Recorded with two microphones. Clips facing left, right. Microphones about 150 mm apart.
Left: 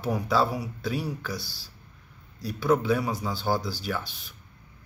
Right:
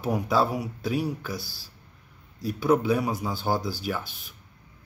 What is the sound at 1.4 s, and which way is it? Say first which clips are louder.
Speech: right 1 dB; 45° right (ahead or behind).